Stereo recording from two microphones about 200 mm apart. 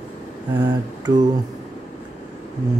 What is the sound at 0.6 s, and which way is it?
Speech, 20° right (ahead or behind).